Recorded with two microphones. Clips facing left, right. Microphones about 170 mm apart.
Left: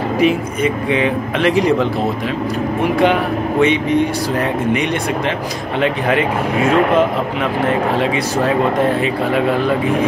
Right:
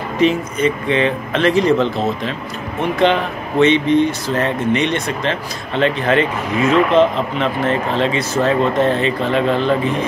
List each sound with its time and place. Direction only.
0.2 s speech: 10° left (ahead or behind)
6.6 s speech: 55° left (ahead or behind)
7.6 s speech: 10° left (ahead or behind)